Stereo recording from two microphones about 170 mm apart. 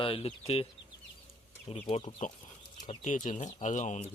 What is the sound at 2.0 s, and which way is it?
Speech, 30° left (ahead or behind).